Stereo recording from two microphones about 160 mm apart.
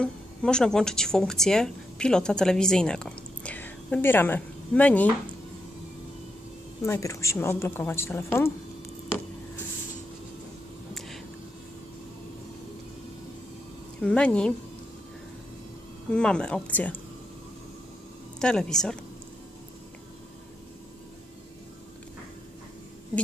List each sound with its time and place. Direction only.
0.0 s speech: 5° left (ahead or behind)
6.8 s a woman's voice: 20° left (ahead or behind)
14.0 s a woman's voice: 5° left (ahead or behind)
16.1 s a woman's voice: 5° left (ahead or behind)
18.3 s speech: 5° left (ahead or behind)